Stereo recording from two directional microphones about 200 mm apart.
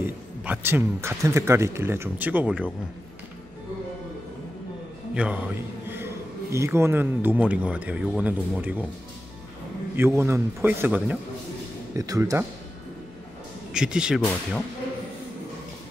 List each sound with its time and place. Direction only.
0.0 s speech: 10° right (ahead or behind)
5.1 s a man's voice: 5° right (ahead or behind)
6.5 s speech: 15° right (ahead or behind)
9.9 s speech: 10° right (ahead or behind)
13.7 s speech: 5° right (ahead or behind)